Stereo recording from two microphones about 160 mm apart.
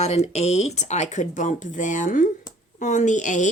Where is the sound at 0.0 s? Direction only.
40° left (ahead or behind).